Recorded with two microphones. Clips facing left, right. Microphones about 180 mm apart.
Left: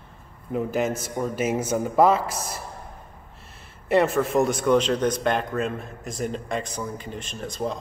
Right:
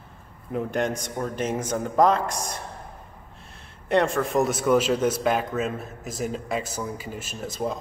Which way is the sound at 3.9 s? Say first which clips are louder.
Left 2 dB; 5° left (ahead or behind).